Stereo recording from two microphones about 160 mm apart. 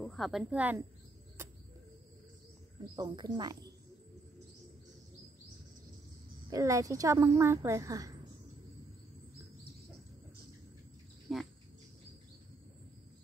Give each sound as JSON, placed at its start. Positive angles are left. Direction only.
{"t": 0.0, "sound": "speech", "side_deg": 0}
{"t": 3.0, "sound": "a woman's voice", "side_deg": -25}
{"t": 6.5, "sound": "a woman's voice", "side_deg": -20}
{"t": 11.3, "sound": "speech", "side_deg": 0}